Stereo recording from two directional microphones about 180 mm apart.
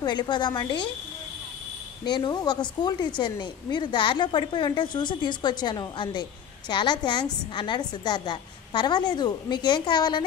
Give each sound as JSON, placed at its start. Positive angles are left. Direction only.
{"t": 0.0, "sound": "a woman's voice", "side_deg": 25}
{"t": 2.0, "sound": "a woman's voice", "side_deg": 25}